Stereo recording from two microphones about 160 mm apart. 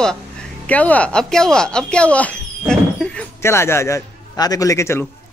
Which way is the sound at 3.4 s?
15° left (ahead or behind).